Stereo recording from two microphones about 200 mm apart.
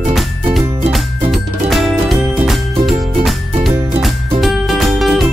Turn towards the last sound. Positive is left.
turn(degrees=0)  # may be behind; listen again after turning